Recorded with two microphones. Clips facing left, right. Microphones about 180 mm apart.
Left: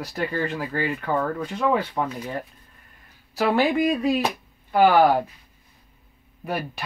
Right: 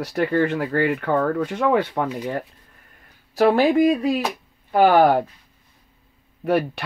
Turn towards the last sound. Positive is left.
turn(degrees=-70)  # may be behind; listen again after turning